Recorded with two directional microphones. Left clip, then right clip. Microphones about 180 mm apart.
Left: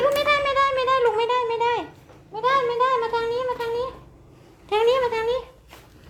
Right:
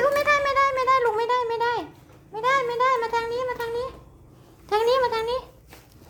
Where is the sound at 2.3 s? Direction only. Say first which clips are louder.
Left 2 dB; 20° right (ahead or behind).